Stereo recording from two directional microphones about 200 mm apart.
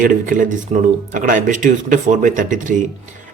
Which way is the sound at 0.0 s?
40° right (ahead or behind).